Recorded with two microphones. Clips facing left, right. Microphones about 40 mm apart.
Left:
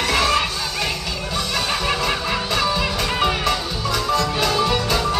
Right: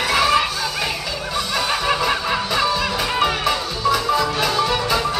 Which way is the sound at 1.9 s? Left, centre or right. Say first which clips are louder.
Right 2 dB; centre.